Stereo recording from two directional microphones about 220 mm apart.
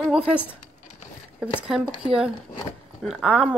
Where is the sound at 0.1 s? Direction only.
5° right (ahead or behind).